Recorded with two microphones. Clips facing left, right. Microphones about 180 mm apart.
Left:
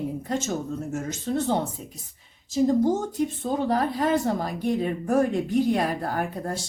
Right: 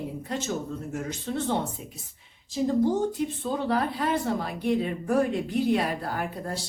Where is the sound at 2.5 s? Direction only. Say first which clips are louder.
Left 3 dB; 45° left (ahead or behind).